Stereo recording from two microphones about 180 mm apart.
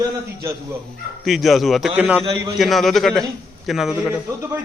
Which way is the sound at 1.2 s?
Centre (ahead or behind).